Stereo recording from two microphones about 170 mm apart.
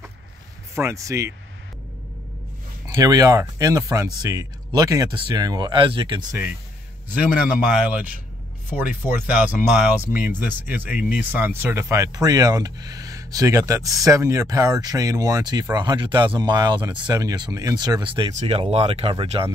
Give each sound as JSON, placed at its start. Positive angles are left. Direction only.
{"t": 0.7, "sound": "speech", "side_deg": -15}
{"t": 3.0, "sound": "speech", "side_deg": -20}
{"t": 7.1, "sound": "speech", "side_deg": -5}